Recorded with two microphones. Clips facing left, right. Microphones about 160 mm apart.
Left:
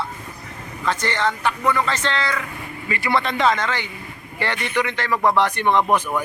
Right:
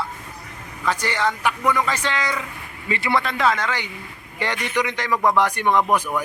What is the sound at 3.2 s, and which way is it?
Speech, 5° right (ahead or behind).